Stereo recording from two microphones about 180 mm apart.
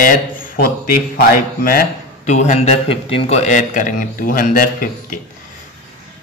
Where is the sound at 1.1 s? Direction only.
55° left (ahead or behind).